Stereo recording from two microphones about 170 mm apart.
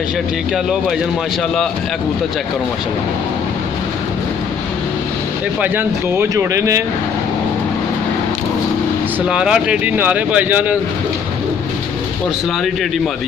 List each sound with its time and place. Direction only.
5.6 s speech: 10° right (ahead or behind)
9.3 s speech: 5° right (ahead or behind)